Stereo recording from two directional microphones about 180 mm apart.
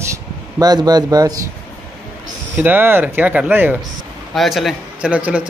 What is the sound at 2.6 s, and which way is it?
A man's voice, 10° right (ahead or behind).